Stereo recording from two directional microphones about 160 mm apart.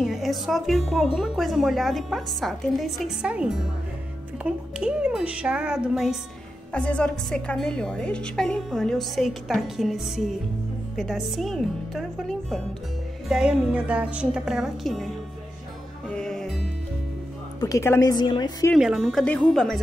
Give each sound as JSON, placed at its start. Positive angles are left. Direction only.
{"t": 0.0, "sound": "a woman's voice", "side_deg": 0}
{"t": 6.7, "sound": "a woman's voice", "side_deg": 5}
{"t": 16.1, "sound": "music", "side_deg": 5}
{"t": 17.6, "sound": "a woman's voice", "side_deg": 20}
{"t": 18.8, "sound": "a woman's voice", "side_deg": -5}
{"t": 19.2, "sound": "a woman's voice", "side_deg": 10}